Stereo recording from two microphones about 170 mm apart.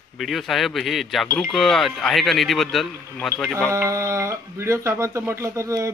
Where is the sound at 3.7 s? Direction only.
20° right (ahead or behind).